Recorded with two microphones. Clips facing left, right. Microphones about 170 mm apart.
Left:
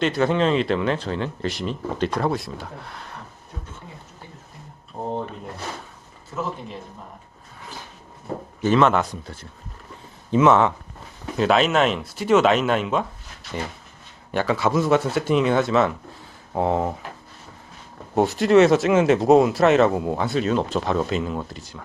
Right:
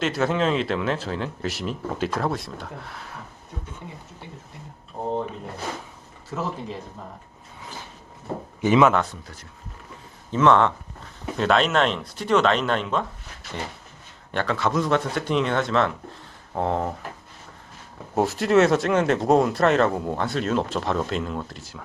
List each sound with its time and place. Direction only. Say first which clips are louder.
0.0 s speech: left 3 dB; centre (ahead or behind)
8.6 s speech: even; 15° right (ahead or behind)
9.2 s speech: left 5 dB; 30° left (ahead or behind)
10.3 s speech: left 2 dB; 10° left (ahead or behind)
14.3 s speech: left 3 dB; 5° left (ahead or behind)
18.1 s speech: left 3 dB; centre (ahead or behind)